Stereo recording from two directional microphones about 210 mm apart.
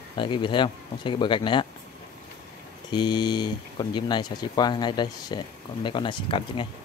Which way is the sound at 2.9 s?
20° left (ahead or behind).